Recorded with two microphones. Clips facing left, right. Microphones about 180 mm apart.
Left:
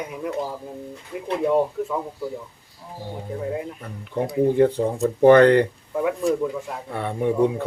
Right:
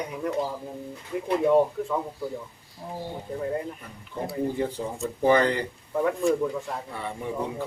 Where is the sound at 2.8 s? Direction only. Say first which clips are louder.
Right 4 dB; 40° right (ahead or behind).